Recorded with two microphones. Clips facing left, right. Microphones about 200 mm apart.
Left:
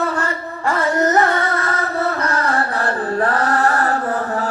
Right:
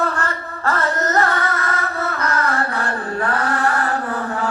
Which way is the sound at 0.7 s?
15° left (ahead or behind).